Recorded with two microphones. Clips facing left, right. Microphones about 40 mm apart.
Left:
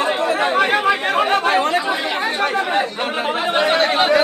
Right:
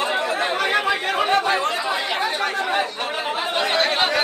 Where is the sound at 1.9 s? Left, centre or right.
Left.